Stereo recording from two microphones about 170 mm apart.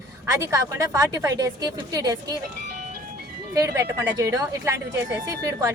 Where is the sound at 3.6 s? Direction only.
15° right (ahead or behind).